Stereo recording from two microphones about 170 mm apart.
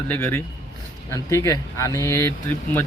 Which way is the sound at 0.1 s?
15° left (ahead or behind).